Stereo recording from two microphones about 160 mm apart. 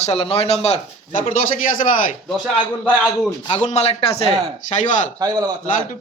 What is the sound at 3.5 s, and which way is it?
Speech, 45° left (ahead or behind).